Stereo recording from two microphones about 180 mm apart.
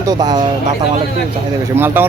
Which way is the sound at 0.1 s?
20° right (ahead or behind).